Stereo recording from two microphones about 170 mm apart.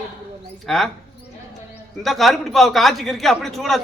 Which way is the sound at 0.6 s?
Centre (ahead or behind).